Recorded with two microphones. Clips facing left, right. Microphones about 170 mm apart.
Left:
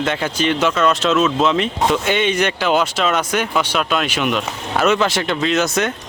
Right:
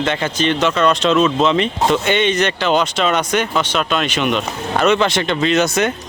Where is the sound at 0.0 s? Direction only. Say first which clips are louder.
Right 1 dB; 5° left (ahead or behind).